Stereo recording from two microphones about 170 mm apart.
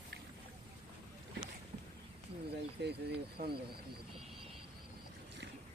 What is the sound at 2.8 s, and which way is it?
Speech, 75° right (ahead or behind).